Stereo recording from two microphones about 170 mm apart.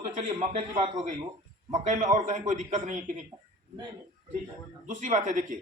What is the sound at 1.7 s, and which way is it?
A man's voice, 45° right (ahead or behind).